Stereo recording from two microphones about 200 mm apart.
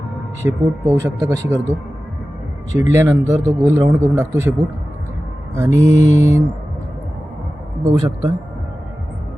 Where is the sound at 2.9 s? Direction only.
15° right (ahead or behind).